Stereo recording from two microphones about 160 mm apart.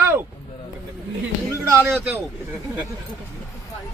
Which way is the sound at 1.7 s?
15° right (ahead or behind).